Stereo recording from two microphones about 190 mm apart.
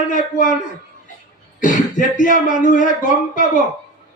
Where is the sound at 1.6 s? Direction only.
45° left (ahead or behind).